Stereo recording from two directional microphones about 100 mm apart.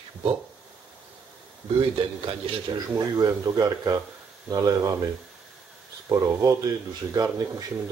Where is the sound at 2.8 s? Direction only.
40° right (ahead or behind).